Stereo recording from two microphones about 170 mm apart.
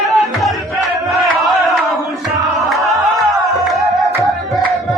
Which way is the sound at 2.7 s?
Centre (ahead or behind).